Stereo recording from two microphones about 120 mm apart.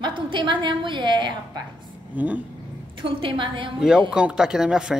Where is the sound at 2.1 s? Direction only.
15° right (ahead or behind).